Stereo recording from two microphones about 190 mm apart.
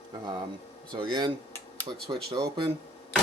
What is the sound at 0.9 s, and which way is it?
Speech, 25° right (ahead or behind).